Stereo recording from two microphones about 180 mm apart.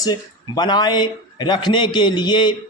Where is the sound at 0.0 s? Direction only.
25° left (ahead or behind).